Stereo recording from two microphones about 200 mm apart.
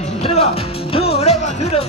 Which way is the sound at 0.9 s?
30° left (ahead or behind).